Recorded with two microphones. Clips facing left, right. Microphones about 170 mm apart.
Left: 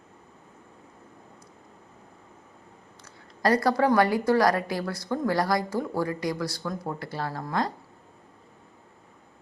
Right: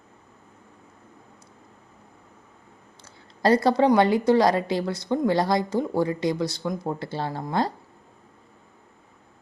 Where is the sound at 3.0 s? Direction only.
25° right (ahead or behind).